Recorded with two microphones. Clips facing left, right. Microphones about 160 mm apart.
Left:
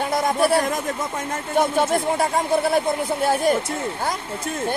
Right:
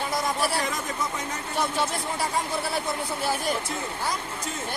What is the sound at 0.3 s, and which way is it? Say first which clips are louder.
Speech: left 8 dB; 50° left (ahead or behind).